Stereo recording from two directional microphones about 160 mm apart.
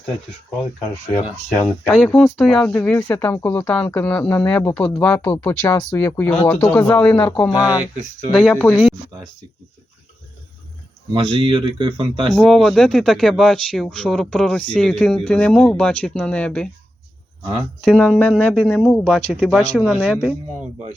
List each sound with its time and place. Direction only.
1.1 s speech: 10° left (ahead or behind)
11.1 s speech: 30° right (ahead or behind)
12.3 s speech: centre (ahead or behind)